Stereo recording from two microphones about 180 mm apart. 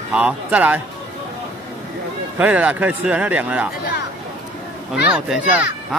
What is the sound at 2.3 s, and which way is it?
Speech, 10° right (ahead or behind).